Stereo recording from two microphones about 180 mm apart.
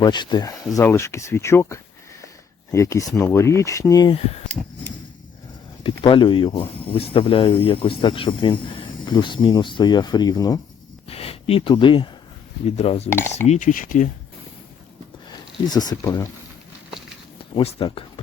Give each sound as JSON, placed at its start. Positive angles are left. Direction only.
{"t": 0.0, "sound": "speech", "side_deg": 25}
{"t": 4.6, "sound": "a sound", "side_deg": -15}
{"t": 5.8, "sound": "speech", "side_deg": 25}
{"t": 11.1, "sound": "speech", "side_deg": 30}
{"t": 13.5, "sound": "speech", "side_deg": 45}
{"t": 15.6, "sound": "speech", "side_deg": 20}
{"t": 17.5, "sound": "speech", "side_deg": 30}